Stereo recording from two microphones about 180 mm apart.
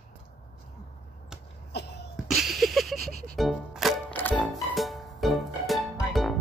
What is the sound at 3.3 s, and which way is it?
Music, centre (ahead or behind).